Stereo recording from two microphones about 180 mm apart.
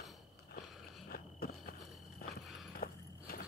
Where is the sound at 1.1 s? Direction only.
55° left (ahead or behind).